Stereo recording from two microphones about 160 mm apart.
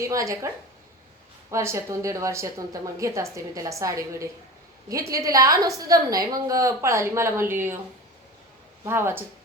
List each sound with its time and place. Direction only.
0.0 s a woman's voice: 20° right (ahead or behind)
8.8 s speech: 15° right (ahead or behind)